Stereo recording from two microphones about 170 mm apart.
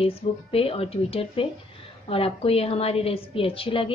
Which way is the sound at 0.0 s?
35° left (ahead or behind).